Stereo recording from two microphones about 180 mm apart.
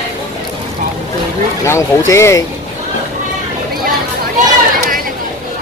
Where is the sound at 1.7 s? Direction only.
15° left (ahead or behind).